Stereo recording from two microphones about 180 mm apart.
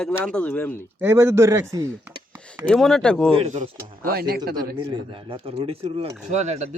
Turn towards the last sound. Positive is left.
turn(degrees=-40)  # may be behind; listen again after turning